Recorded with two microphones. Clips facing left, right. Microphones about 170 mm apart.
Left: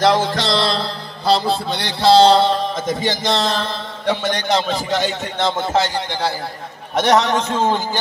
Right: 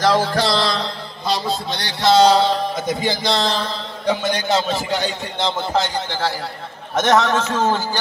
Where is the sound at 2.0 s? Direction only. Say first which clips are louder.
Left 2 dB; 30° left (ahead or behind).